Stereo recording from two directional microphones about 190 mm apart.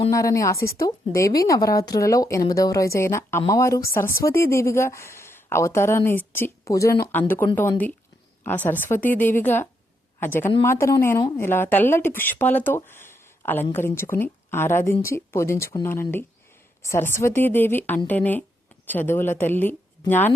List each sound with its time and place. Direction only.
0.1 s a woman's voice: 15° left (ahead or behind)